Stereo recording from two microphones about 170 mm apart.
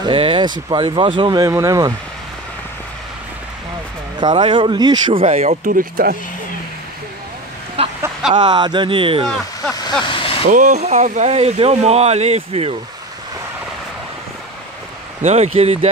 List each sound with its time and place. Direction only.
0.0 s speech: 30° right (ahead or behind)
4.2 s speech: 30° right (ahead or behind)
5.7 s speech: 55° right (ahead or behind)
7.8 s a sound: 35° right (ahead or behind)
8.3 s speech: 25° right (ahead or behind)
10.0 s vehicle: 30° left (ahead or behind)
10.5 s speech: 45° right (ahead or behind)
15.2 s speech: 40° right (ahead or behind)